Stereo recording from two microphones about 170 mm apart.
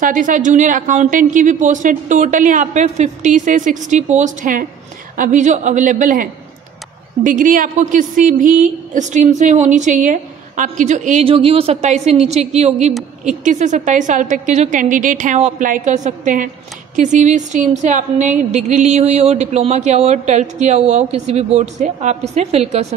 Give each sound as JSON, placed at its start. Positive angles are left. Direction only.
{"t": 0.0, "sound": "a woman's voice", "side_deg": -50}
{"t": 7.2, "sound": "a woman's voice", "side_deg": -50}